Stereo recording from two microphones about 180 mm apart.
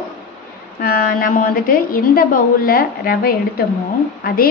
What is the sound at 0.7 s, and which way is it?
A woman's voice, 50° left (ahead or behind).